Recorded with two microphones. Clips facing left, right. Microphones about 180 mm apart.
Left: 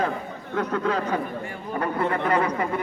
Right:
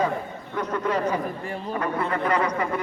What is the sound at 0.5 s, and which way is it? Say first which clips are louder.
Speech: left 1 dB; 80° left.